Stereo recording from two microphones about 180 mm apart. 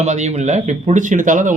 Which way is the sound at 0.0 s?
40° right (ahead or behind).